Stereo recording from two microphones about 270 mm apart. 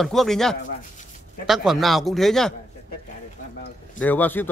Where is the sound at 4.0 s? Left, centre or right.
Centre.